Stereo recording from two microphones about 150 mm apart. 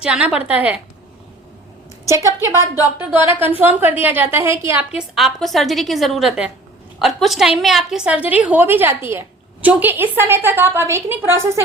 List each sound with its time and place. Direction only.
0.0 s a woman's voice: 5° right (ahead or behind)
2.0 s a woman's voice: 20° right (ahead or behind)
4.9 s a woman's voice: 5° right (ahead or behind)